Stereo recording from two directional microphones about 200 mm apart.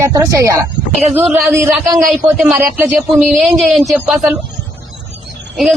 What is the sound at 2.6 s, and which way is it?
Speech, 10° right (ahead or behind).